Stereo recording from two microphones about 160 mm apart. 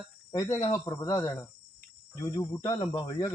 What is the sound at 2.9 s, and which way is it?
Speech, 40° left (ahead or behind).